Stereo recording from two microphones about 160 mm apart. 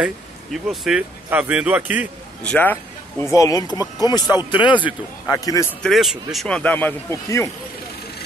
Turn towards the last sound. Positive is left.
turn(degrees=15)  # may be behind; listen again after turning